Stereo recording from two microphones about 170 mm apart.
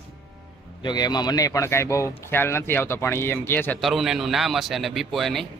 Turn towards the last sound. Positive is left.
turn(degrees=0)  # may be behind; listen again after turning